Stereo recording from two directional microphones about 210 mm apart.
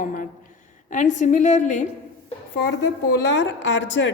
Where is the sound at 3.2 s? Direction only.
60° left (ahead or behind).